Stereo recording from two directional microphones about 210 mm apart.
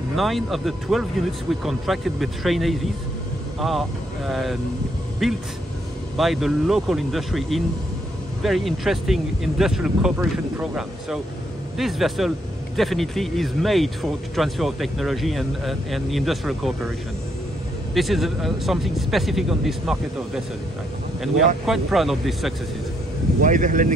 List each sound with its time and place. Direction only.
0.1 s speech: centre (ahead or behind)
17.9 s speech: centre (ahead or behind)
21.6 s speech: centre (ahead or behind)
23.4 s speech: 40° right (ahead or behind)